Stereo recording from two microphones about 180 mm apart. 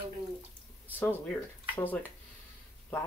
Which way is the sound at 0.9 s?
10° left (ahead or behind).